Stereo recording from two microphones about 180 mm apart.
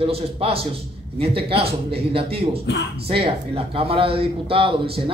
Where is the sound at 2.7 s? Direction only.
70° left (ahead or behind).